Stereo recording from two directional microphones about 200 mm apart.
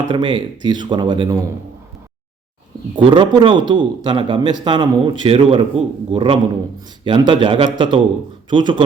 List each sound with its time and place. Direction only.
0.1 s speech: 25° right (ahead or behind)
2.9 s speech: 25° right (ahead or behind)